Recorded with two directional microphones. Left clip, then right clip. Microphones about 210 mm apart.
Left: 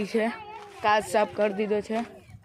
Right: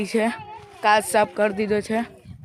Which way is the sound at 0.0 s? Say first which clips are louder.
Right 4 dB; 30° right (ahead or behind).